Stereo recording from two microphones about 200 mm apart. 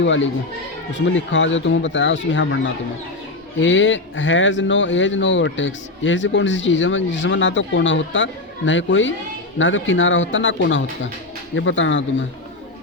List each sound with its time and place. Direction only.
0.0 s speech: 70° left (ahead or behind)